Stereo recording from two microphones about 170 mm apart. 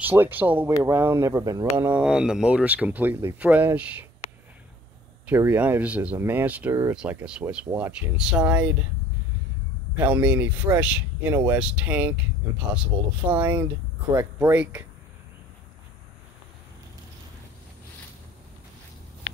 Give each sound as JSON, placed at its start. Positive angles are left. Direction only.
{"t": 0.0, "sound": "speech", "side_deg": -10}
{"t": 1.9, "sound": "speech", "side_deg": -5}
{"t": 5.3, "sound": "speech", "side_deg": -10}
{"t": 9.9, "sound": "speech", "side_deg": -10}